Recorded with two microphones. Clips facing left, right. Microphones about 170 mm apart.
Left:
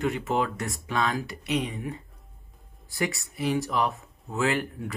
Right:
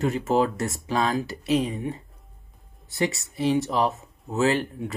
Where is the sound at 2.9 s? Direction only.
20° right (ahead or behind).